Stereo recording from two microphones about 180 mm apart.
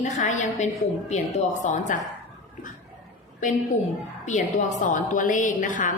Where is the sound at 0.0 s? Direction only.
45° left (ahead or behind).